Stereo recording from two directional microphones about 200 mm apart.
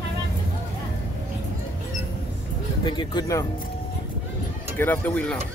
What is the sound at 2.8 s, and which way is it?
Speech, 20° left (ahead or behind).